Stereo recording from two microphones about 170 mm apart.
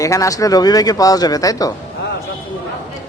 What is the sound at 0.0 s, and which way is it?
Speech, 20° left (ahead or behind).